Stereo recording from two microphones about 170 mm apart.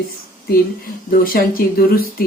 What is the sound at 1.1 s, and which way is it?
Speech, 60° left (ahead or behind).